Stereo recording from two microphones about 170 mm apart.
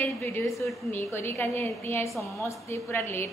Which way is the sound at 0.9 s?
15° left (ahead or behind).